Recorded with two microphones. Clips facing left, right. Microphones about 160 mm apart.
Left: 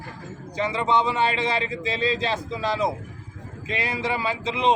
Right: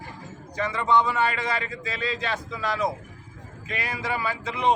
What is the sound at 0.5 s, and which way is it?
Speech, 25° left (ahead or behind).